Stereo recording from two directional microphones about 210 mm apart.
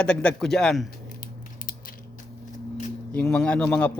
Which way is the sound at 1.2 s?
40° left (ahead or behind).